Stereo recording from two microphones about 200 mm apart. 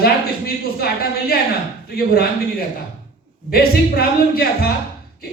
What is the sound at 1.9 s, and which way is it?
Speech, 50° left (ahead or behind).